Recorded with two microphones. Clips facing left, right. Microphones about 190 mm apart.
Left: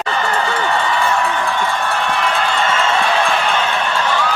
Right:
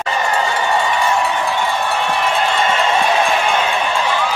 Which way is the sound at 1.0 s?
15° right (ahead or behind).